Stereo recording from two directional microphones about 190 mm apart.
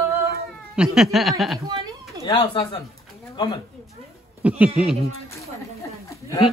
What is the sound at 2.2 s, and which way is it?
Speech, 30° left (ahead or behind).